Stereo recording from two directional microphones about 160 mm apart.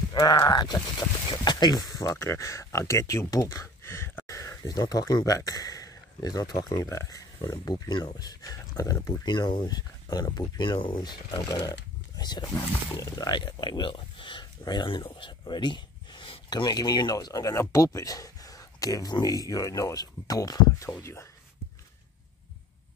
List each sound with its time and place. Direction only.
0.1 s speech: 25° left (ahead or behind)